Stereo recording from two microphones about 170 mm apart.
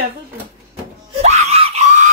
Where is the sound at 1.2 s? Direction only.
40° right (ahead or behind).